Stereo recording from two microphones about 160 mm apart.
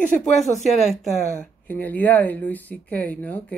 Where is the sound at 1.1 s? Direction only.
45° left (ahead or behind).